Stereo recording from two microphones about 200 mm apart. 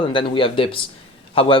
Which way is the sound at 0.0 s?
25° left (ahead or behind).